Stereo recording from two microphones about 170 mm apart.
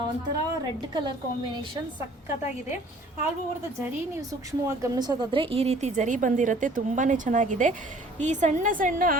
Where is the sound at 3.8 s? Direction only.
15° right (ahead or behind).